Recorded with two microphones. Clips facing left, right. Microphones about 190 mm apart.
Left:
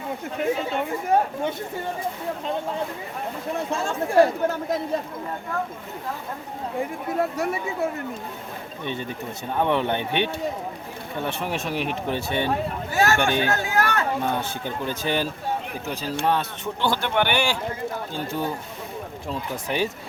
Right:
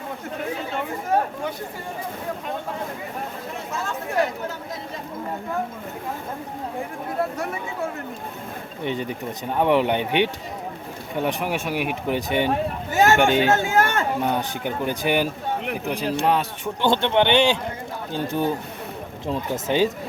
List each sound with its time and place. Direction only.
3.7 s speech: 30° left (ahead or behind)
8.8 s speech: 15° right (ahead or behind)